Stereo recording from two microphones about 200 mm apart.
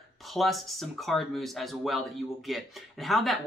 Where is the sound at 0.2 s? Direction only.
Centre (ahead or behind).